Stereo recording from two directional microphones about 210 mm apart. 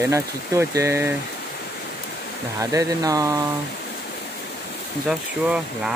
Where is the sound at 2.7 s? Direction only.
15° right (ahead or behind).